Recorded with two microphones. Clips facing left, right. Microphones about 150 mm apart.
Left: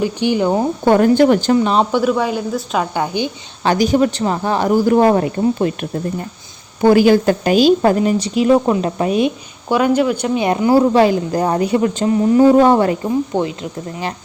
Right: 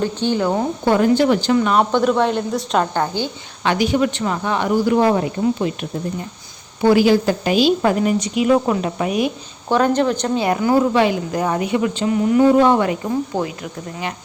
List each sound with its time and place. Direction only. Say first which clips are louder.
0.0 s speech: left 3 dB; 15° left (ahead or behind)
0.9 s a woman's voice: left 4 dB; 50° left (ahead or behind)
1.5 s speech: left 2 dB; 25° left (ahead or behind)
1.9 s a woman's voice: even; 5° left (ahead or behind)
3.6 s speech: left 3 dB; 40° left (ahead or behind)
6.8 s a woman's voice: left 3 dB; 50° left (ahead or behind); by 8.5 s 35° left (ahead or behind)
8.5 s speech: left 3 dB; 20° left (ahead or behind)
8.8 s speech: left 4 dB; 30° left (ahead or behind)
9.6 s speech: left 2 dB; 10° left (ahead or behind)
10.4 s speech: left 4 dB; 20° left (ahead or behind)